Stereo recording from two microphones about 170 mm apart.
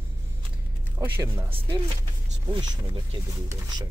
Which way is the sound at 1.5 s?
30° right (ahead or behind).